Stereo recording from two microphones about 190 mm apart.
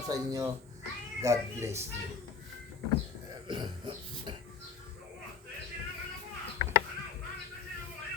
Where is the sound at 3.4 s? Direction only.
25° right (ahead or behind).